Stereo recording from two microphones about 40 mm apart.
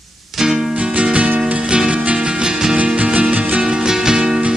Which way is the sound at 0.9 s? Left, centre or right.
Right.